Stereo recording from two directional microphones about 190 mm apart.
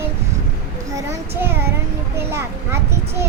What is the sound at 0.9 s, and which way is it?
Child singing, 10° right (ahead or behind).